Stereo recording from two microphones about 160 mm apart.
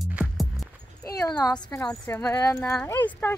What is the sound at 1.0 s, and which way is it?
A woman's voice, 20° left (ahead or behind).